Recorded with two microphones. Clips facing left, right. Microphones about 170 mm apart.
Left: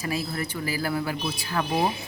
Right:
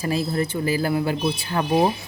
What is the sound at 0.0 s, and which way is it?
Speech, 30° right (ahead or behind).